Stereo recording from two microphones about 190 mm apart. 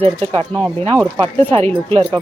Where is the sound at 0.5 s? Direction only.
10° left (ahead or behind).